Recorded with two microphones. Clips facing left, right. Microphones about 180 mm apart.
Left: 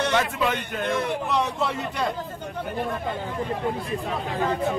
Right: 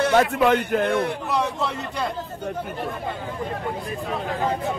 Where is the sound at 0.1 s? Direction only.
60° right (ahead or behind).